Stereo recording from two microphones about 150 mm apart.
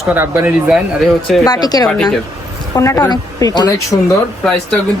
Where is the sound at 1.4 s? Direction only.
25° left (ahead or behind).